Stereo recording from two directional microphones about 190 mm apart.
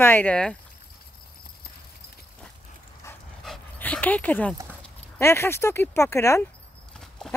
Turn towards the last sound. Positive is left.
turn(degrees=0)  # may be behind; listen again after turning